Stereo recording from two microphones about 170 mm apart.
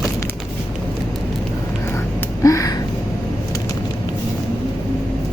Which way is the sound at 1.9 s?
15° left (ahead or behind).